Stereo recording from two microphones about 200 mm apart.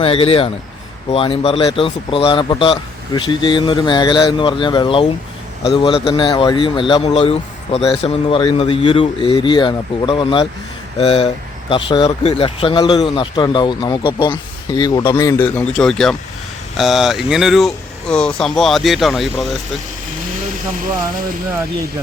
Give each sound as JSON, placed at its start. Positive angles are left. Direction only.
{"t": 0.0, "sound": "speech", "side_deg": 30}